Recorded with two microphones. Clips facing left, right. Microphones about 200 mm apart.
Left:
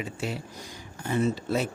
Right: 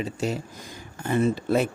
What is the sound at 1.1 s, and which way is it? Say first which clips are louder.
Speech: right 4 dB; 55° right (ahead or behind).